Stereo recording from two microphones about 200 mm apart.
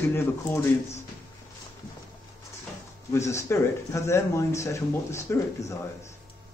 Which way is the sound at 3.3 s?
15° left (ahead or behind).